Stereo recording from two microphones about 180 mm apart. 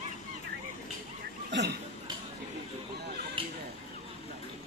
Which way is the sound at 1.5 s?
75° right (ahead or behind).